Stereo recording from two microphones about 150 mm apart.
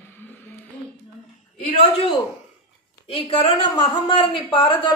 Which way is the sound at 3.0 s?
40° left (ahead or behind).